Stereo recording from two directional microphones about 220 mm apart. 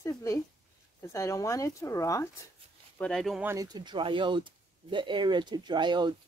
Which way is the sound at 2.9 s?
5° left (ahead or behind).